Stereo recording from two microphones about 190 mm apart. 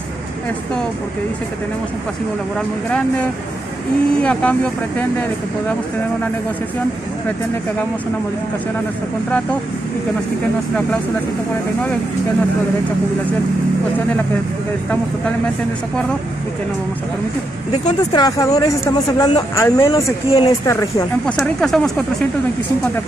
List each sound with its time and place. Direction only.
4.2 s speech: 5° left (ahead or behind)
18.1 s speech: 20° left (ahead or behind)
21.4 s speech: centre (ahead or behind)